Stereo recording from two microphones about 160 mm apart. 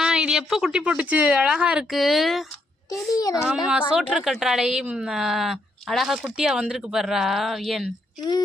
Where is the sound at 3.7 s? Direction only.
5° right (ahead or behind).